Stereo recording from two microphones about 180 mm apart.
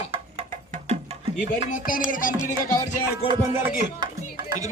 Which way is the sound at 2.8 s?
30° left (ahead or behind).